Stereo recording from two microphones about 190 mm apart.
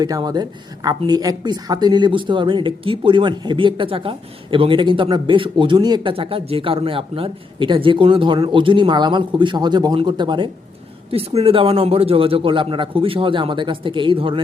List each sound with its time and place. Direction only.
0.0 s speech: 20° right (ahead or behind)